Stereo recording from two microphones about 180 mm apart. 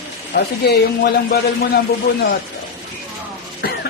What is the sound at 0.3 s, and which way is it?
Speech, 60° left (ahead or behind).